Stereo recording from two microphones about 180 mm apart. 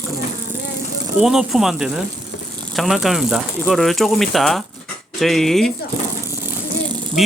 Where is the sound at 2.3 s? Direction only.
75° left (ahead or behind).